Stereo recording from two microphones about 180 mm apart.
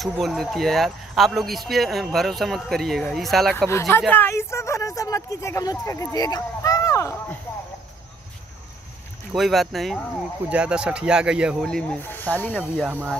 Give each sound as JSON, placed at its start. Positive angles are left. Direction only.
{"t": 0.0, "sound": "speech", "side_deg": 0}
{"t": 3.5, "sound": "speech", "side_deg": 15}
{"t": 9.3, "sound": "speech", "side_deg": 0}
{"t": 12.8, "sound": "speech", "side_deg": -10}